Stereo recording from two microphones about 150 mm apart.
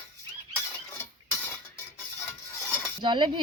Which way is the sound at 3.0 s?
30° right (ahead or behind).